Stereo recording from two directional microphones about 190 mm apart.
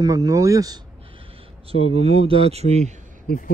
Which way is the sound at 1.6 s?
30° right (ahead or behind).